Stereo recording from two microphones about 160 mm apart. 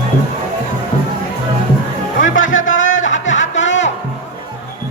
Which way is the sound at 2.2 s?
55° left (ahead or behind).